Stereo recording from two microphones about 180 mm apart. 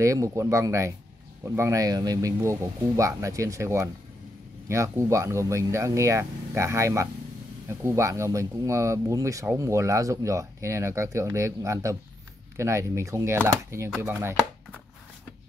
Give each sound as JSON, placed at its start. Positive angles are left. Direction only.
{"t": 0.0, "sound": "speech", "side_deg": -15}